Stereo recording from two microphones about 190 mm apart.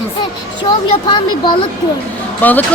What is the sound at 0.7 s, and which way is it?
Speech, 25° left (ahead or behind).